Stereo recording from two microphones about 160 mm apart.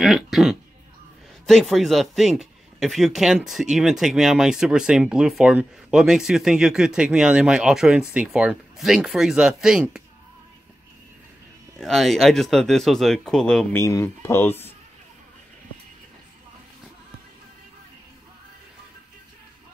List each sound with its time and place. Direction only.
0.0 s a man's voice: centre (ahead or behind)
11.8 s speech: centre (ahead or behind)
13.7 s speech: 20° left (ahead or behind)